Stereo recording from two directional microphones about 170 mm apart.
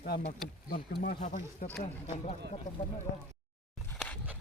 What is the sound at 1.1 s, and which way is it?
Speech, 50° left (ahead or behind).